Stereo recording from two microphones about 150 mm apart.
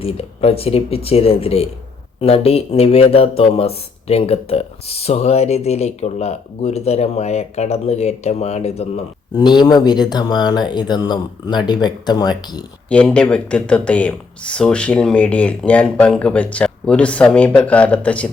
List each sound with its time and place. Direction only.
0.0 s speech: 40° left (ahead or behind)
9.3 s speech: 30° left (ahead or behind)
12.9 s speech: 10° left (ahead or behind)